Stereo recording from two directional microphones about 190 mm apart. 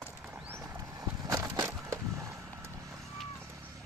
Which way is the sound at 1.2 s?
20° right (ahead or behind).